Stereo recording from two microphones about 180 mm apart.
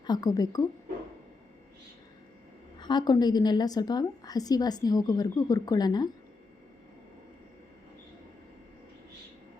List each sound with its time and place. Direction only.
0.0 s a woman's voice: 20° left (ahead or behind)
2.7 s a woman's voice: 25° left (ahead or behind)